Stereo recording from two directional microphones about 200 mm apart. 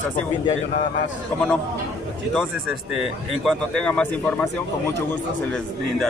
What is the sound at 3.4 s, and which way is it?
Speech, centre (ahead or behind).